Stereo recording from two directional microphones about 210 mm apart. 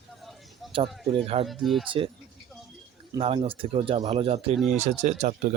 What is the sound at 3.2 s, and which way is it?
Speech, 25° right (ahead or behind).